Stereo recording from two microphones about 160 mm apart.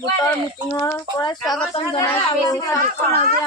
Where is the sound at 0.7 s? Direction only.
20° left (ahead or behind).